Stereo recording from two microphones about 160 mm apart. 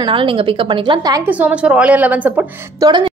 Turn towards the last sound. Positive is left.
turn(degrees=-30)  # may be behind; listen again after turning